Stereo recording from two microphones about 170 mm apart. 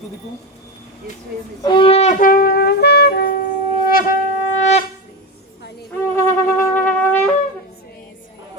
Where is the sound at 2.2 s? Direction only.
60° left (ahead or behind).